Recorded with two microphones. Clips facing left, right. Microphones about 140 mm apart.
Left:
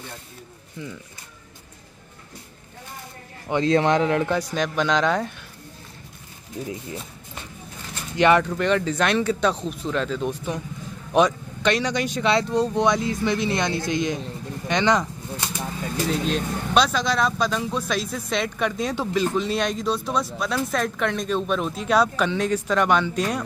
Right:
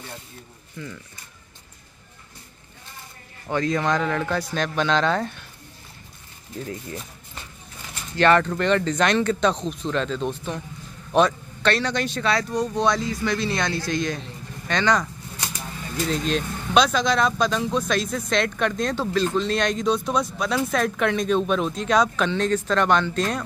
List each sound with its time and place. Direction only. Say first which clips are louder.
3.4 s speech: left 3 dB; 25° left (ahead or behind)
6.6 s speech: left 1 dB; 15° left (ahead or behind)
8.2 s speech: even; 10° left (ahead or behind)
12.3 s speech: left 4 dB; 25° left (ahead or behind)
14.7 s bird flight: left 1 dB; 20° left (ahead or behind)
16.1 s speech: right 1 dB; 5° left (ahead or behind)